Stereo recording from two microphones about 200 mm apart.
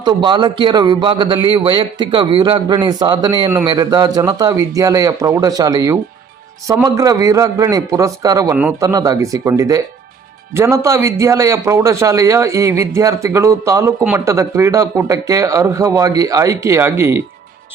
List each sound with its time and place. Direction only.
0.2 s a man's voice: 20° right (ahead or behind)